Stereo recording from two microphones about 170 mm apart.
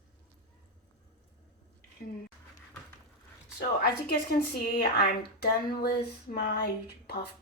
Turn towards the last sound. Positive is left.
turn(degrees=70)  # may be behind; listen again after turning